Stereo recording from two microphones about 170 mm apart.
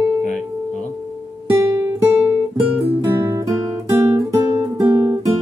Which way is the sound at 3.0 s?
15° right (ahead or behind).